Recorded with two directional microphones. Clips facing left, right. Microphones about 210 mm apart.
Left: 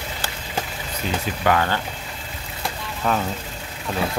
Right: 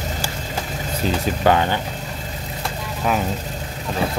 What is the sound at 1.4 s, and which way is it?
Speech, 20° right (ahead or behind).